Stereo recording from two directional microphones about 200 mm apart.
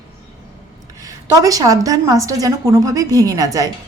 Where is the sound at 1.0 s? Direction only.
15° right (ahead or behind).